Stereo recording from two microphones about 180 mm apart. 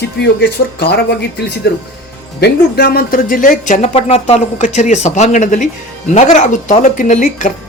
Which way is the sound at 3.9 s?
35° left (ahead or behind).